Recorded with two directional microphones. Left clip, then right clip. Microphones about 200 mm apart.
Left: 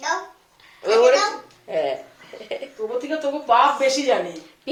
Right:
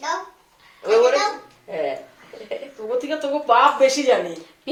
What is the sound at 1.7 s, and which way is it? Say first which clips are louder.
Speech: left 3 dB; 50° left (ahead or behind).